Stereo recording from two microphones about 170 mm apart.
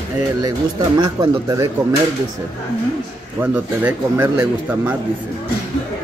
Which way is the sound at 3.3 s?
10° right (ahead or behind).